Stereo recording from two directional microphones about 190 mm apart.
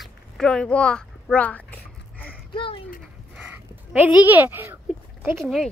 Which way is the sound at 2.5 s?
25° left (ahead or behind).